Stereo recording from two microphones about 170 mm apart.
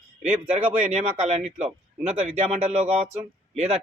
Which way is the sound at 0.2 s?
40° right (ahead or behind).